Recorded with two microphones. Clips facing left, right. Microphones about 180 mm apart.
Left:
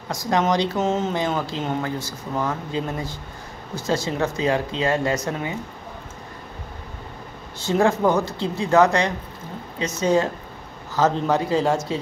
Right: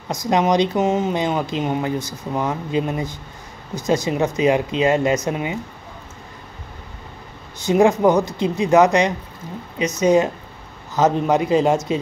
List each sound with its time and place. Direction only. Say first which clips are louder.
0.1 s speech: right 3 dB; 20° right (ahead or behind)
7.6 s speech: right 4 dB; 15° right (ahead or behind)